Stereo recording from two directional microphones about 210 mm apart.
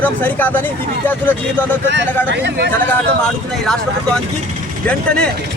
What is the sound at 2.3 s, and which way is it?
Speech, 55° right (ahead or behind).